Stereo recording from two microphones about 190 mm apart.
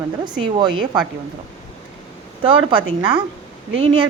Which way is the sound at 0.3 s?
25° right (ahead or behind).